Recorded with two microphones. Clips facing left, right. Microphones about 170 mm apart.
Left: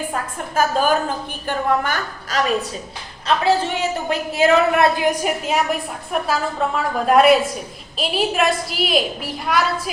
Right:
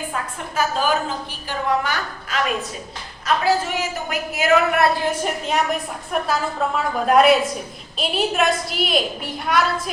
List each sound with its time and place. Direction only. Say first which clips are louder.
0.1 s a woman's voice: left 3 dB; 45° left (ahead or behind)
3.2 s a woman's voice: left 2 dB; 25° left (ahead or behind); by 9.9 s centre (ahead or behind)